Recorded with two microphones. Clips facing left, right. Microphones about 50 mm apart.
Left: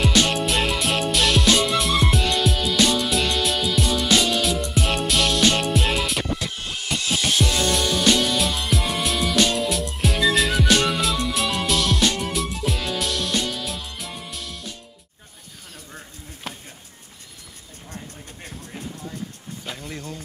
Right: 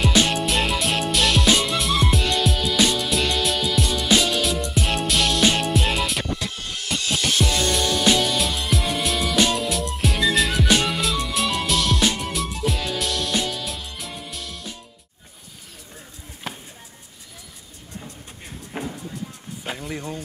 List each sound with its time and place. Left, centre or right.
0.3 s music: centre
18.8 s music: right
19.7 s a sound: right